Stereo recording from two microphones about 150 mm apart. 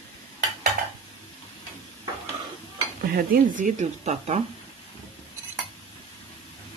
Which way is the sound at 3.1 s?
65° right (ahead or behind).